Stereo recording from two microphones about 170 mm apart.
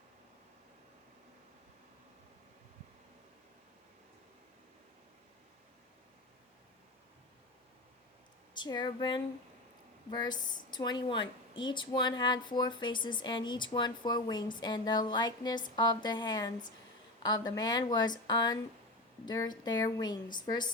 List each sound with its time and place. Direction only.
8.5 s a woman's voice: 25° left (ahead or behind)